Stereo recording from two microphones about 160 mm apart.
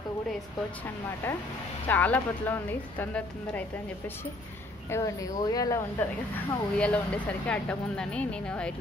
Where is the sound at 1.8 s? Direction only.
10° left (ahead or behind).